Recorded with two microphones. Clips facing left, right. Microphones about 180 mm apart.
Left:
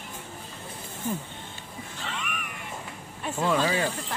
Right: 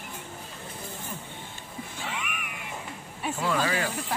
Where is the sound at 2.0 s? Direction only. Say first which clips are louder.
Left 1 dB; 10° right (ahead or behind).